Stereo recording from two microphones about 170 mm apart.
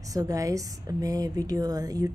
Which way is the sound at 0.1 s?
20° right (ahead or behind).